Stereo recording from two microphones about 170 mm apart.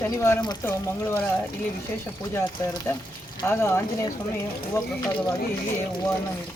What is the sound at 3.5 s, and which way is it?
Speech, 15° left (ahead or behind).